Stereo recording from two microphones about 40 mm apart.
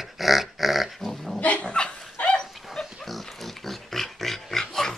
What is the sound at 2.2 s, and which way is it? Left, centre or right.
Dog, left.